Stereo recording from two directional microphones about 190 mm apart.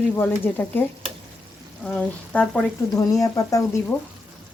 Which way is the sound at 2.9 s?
20° left (ahead or behind).